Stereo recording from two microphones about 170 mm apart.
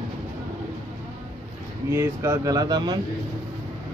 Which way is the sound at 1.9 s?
15° right (ahead or behind).